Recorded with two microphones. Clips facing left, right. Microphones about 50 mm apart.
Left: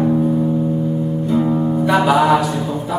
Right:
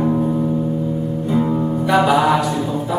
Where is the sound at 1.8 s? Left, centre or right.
Centre.